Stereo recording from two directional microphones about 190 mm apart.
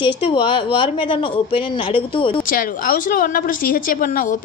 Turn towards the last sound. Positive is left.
turn(degrees=45)  # may be behind; listen again after turning